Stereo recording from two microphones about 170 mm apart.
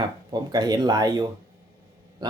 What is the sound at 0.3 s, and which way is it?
Speech, 25° right (ahead or behind).